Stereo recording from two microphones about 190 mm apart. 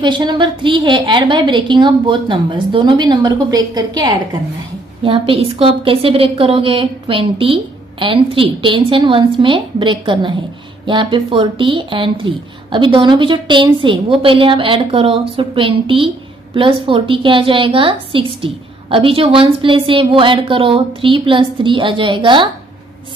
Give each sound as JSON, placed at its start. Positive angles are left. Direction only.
{"t": 0.0, "sound": "a woman's voice", "side_deg": -25}